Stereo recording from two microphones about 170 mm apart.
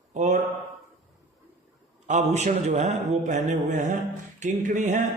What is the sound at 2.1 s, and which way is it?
A man's voice, 45° right (ahead or behind).